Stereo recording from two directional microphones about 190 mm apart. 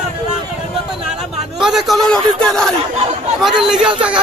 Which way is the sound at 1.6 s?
Centre (ahead or behind).